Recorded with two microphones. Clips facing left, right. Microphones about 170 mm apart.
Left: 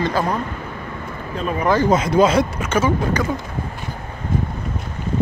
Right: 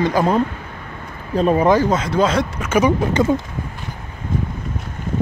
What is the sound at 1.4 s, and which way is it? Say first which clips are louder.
Speech: right 8 dB; 35° right (ahead or behind).